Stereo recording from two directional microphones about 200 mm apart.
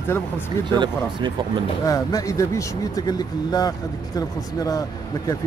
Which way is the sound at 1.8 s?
15° left (ahead or behind).